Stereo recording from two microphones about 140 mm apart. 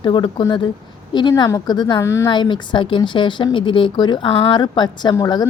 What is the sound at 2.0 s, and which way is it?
Speech, 20° left (ahead or behind).